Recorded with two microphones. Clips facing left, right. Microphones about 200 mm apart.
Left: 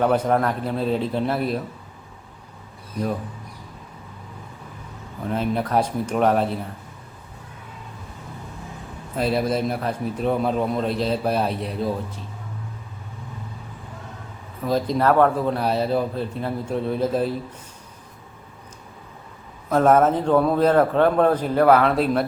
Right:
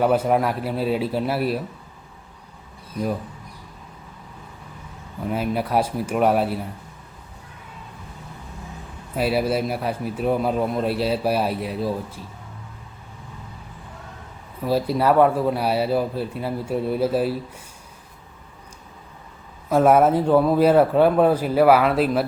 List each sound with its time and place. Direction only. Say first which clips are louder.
0.0 s a man's voice: right 1 dB; 10° right (ahead or behind)
5.3 s a man's voice: even; 10° right (ahead or behind)
9.1 s a man's voice: right 1 dB; 10° right (ahead or behind)
14.6 s a man's voice: even; 10° right (ahead or behind)
19.7 s a man's voice: right 1 dB; 10° right (ahead or behind)